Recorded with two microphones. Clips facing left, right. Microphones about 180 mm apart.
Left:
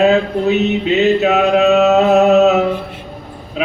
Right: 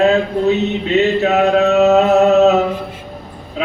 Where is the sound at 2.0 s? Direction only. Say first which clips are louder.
Even; 15° left (ahead or behind).